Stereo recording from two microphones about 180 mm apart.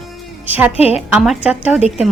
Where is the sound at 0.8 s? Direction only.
35° left (ahead or behind).